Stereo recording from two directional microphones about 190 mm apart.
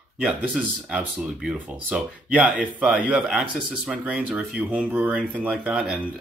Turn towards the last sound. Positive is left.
turn(degrees=-5)  # may be behind; listen again after turning